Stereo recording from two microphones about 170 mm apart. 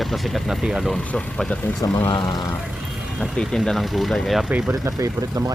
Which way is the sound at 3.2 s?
Centre (ahead or behind).